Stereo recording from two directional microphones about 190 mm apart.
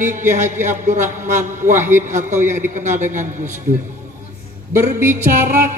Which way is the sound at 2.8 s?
40° right (ahead or behind).